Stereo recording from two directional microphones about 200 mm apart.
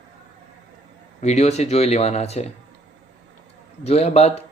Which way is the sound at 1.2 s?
35° left (ahead or behind).